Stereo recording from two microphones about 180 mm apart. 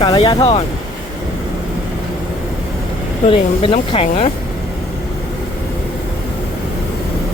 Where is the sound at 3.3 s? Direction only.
30° left (ahead or behind).